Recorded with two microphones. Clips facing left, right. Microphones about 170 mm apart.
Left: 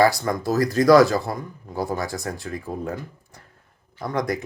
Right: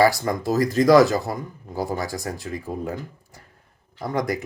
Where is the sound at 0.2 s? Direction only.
20° right (ahead or behind).